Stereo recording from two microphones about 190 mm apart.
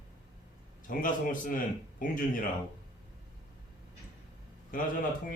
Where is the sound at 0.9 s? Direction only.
45° left (ahead or behind).